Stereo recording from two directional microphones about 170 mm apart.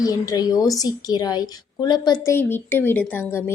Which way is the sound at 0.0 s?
20° left (ahead or behind).